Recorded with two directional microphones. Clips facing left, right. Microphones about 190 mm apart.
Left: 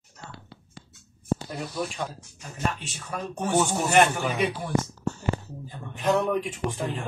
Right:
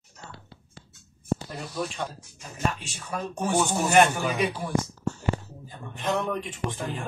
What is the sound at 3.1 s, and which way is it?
Speech, centre (ahead or behind).